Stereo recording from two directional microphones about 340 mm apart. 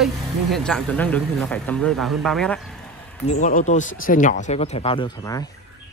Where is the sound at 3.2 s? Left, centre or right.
Left.